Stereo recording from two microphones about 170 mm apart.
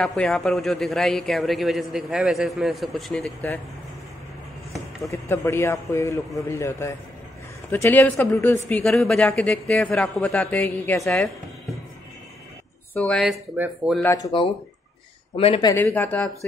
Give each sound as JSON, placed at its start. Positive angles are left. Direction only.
{"t": 0.0, "sound": "a man's voice", "side_deg": 5}
{"t": 5.1, "sound": "a woman's voice", "side_deg": 15}
{"t": 12.9, "sound": "a man's voice", "side_deg": 5}
{"t": 15.3, "sound": "speech", "side_deg": 30}
{"t": 15.7, "sound": "speech", "side_deg": 10}